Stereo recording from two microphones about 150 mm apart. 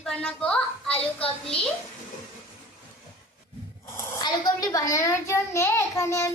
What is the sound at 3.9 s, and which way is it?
A child's voice, 25° left (ahead or behind).